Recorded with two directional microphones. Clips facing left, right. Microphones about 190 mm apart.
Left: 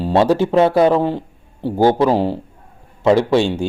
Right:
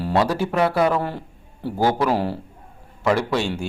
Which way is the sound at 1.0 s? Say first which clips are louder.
Left 8 dB; 15° left (ahead or behind).